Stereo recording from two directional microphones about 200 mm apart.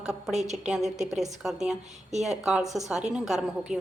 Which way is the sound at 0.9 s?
35° right (ahead or behind).